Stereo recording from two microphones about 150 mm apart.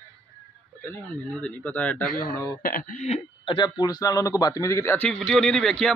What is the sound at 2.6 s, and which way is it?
Throat clearing, 70° left (ahead or behind).